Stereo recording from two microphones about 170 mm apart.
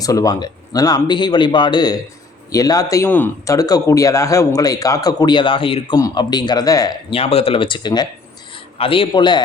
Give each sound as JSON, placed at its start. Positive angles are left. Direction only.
{"t": 0.0, "sound": "speech", "side_deg": 20}
{"t": 7.1, "sound": "speech", "side_deg": 35}